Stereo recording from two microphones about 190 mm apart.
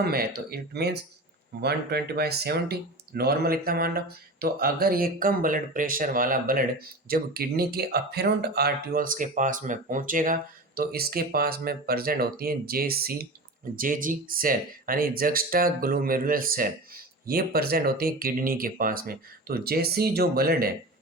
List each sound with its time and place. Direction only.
0.0 s speech: 55° right (ahead or behind)